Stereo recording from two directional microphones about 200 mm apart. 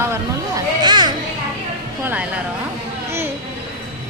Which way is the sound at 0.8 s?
20° right (ahead or behind).